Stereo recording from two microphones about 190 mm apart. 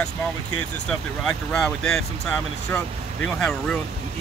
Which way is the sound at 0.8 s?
5° left (ahead or behind).